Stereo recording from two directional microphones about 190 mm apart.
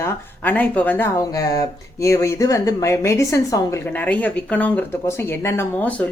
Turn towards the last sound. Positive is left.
turn(degrees=10)  # may be behind; listen again after turning